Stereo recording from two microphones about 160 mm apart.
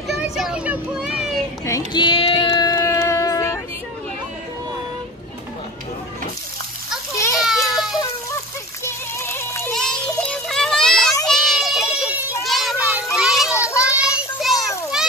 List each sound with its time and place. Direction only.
0.1 s a sound: 5° right (ahead or behind)
1.9 s a sound: 30° left (ahead or behind)
7.3 s baby cry: centre (ahead or behind)
8.8 s music: 15° left (ahead or behind)
9.8 s children playing: 5° left (ahead or behind)
13.6 s child singing: 20° left (ahead or behind)
14.1 s child singing: centre (ahead or behind)